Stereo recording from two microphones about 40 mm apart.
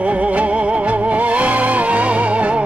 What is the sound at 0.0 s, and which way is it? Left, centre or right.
Music, right.